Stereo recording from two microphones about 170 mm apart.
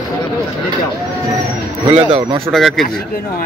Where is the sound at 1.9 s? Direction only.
35° right (ahead or behind).